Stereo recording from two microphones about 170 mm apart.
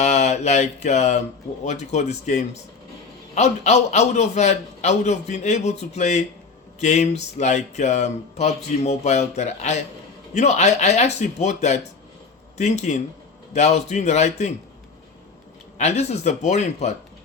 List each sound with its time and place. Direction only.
0.0 s a sound: 45° left (ahead or behind)
1.6 s speech: 40° left (ahead or behind)
15.8 s speech: 40° left (ahead or behind)